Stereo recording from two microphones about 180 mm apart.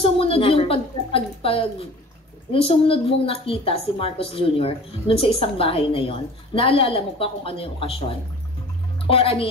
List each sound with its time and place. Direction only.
0.0 s a woman's voice: 30° left (ahead or behind)